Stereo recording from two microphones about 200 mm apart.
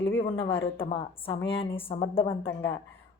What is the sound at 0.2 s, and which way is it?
Speech, 25° left (ahead or behind).